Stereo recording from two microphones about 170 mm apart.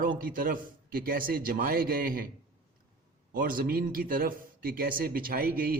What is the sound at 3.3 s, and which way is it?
A man's voice, 55° right (ahead or behind).